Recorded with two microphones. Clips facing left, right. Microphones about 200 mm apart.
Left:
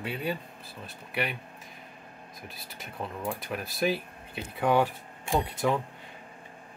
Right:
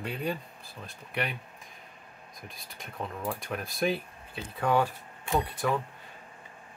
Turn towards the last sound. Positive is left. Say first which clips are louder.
# left 1 dB
turn(degrees=20)  # may be behind; listen again after turning